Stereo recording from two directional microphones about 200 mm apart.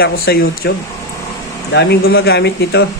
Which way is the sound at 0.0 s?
50° left (ahead or behind).